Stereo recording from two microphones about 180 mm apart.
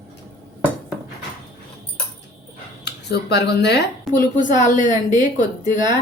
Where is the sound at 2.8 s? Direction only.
70° left (ahead or behind).